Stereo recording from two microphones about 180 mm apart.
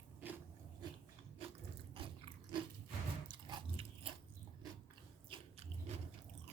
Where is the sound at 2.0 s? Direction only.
30° right (ahead or behind).